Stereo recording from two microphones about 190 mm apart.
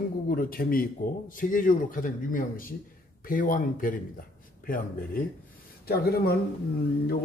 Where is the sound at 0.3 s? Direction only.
50° left (ahead or behind).